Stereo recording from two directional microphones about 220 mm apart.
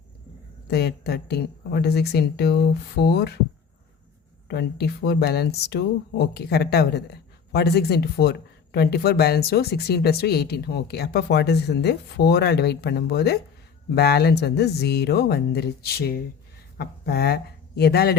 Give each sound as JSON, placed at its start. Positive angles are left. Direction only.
{"t": 0.7, "sound": "speech", "side_deg": 45}
{"t": 4.4, "sound": "speech", "side_deg": 50}